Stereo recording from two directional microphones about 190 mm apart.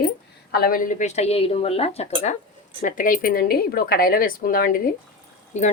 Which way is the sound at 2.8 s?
45° left (ahead or behind).